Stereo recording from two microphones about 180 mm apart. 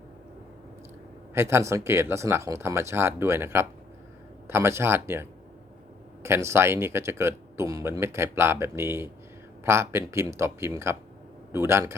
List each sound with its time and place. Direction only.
1.3 s speech: 15° right (ahead or behind)